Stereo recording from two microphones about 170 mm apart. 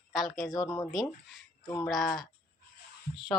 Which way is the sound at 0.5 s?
20° left (ahead or behind).